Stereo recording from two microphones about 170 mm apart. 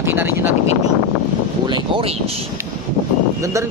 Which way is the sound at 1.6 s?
30° right (ahead or behind).